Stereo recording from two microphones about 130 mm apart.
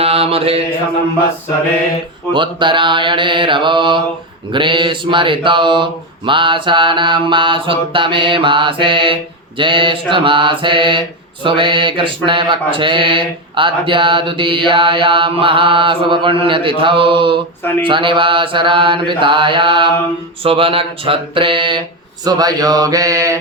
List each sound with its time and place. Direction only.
0.0 s mantra: 45° right (ahead or behind)
2.3 s speech: 40° right (ahead or behind)
17.6 s speech: 15° left (ahead or behind)
17.8 s speech: 40° right (ahead or behind)